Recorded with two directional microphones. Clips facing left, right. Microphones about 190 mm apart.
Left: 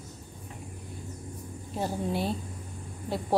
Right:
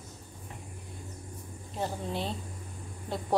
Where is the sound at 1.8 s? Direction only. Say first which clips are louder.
Left 3 dB; 10° left (ahead or behind).